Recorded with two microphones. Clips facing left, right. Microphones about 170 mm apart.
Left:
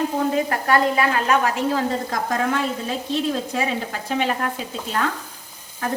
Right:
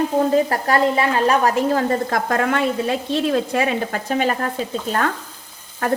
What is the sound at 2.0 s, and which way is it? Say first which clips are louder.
A woman's voice: right 3 dB; 60° right (ahead or behind).